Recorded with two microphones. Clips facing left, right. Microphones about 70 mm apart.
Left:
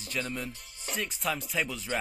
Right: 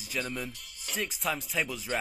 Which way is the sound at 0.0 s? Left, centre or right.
Centre.